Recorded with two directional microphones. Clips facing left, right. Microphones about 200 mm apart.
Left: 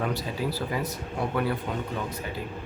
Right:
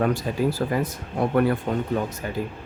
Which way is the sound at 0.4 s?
50° right (ahead or behind).